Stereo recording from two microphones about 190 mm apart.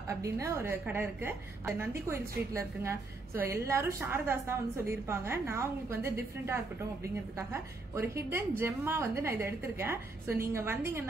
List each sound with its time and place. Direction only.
0.2 s a woman's voice: 15° right (ahead or behind)